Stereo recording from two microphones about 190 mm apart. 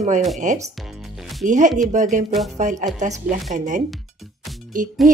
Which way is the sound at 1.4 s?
40° right (ahead or behind).